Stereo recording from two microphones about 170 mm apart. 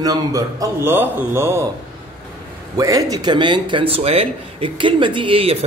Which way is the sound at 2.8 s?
20° right (ahead or behind).